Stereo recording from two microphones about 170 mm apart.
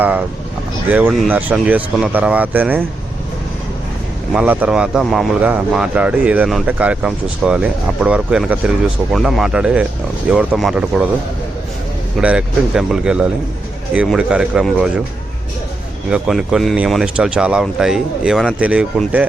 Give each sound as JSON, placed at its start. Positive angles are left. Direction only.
{"t": 0.9, "sound": "speech", "side_deg": -10}
{"t": 4.3, "sound": "speech", "side_deg": -5}
{"t": 12.2, "sound": "speech", "side_deg": -5}
{"t": 16.0, "sound": "speech", "side_deg": -5}